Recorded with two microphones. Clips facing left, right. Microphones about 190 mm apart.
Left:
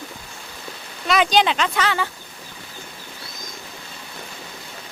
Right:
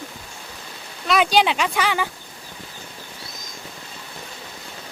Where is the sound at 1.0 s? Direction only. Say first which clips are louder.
Even; 5° right (ahead or behind).